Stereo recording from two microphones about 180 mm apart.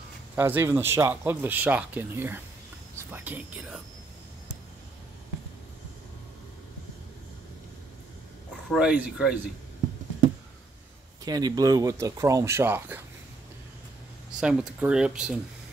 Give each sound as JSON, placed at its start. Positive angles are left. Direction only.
{"t": 0.4, "sound": "speech", "side_deg": -10}
{"t": 8.7, "sound": "speech", "side_deg": -5}
{"t": 11.2, "sound": "speech", "side_deg": -20}
{"t": 14.4, "sound": "speech", "side_deg": -5}